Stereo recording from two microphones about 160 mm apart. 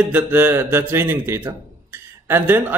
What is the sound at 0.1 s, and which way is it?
Speech, 15° right (ahead or behind).